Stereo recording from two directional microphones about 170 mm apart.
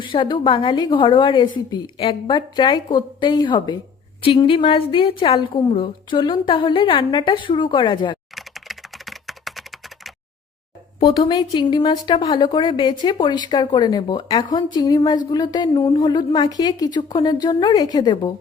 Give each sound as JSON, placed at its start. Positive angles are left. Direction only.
{"t": 0.0, "sound": "a woman's voice", "side_deg": 30}
{"t": 8.4, "sound": "computer keyboard", "side_deg": 0}
{"t": 11.2, "sound": "a woman's voice", "side_deg": 25}